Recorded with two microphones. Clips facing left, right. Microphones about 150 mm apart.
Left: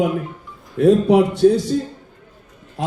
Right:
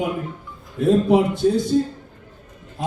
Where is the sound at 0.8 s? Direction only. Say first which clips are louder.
Left 3 dB; 70° left (ahead or behind).